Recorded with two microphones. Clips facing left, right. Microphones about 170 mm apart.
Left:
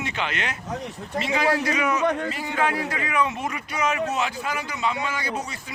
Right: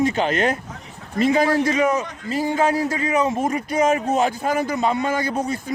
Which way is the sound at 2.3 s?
35° right (ahead or behind).